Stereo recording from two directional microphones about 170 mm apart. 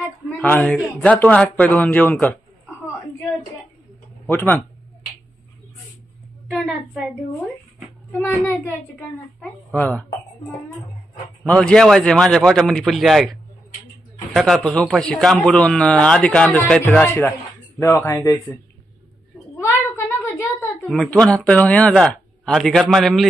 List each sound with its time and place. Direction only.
0.3 s a woman's voice: 10° left (ahead or behind)
0.7 s speech: 5° right (ahead or behind)
1.0 s speech: 10° left (ahead or behind)
4.3 s speech: 10° left (ahead or behind)
6.5 s a woman's voice: 5° right (ahead or behind)
8.1 s speech: 10° left (ahead or behind)
11.4 s speech: 5° left (ahead or behind)
20.2 s a sound: 15° left (ahead or behind)
20.9 s speech: 5° left (ahead or behind)